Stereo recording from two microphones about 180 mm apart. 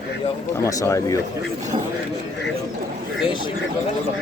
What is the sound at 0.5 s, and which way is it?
Speech, 15° left (ahead or behind).